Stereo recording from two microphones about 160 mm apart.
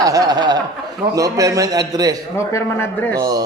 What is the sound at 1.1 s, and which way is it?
A man's voice, 20° right (ahead or behind).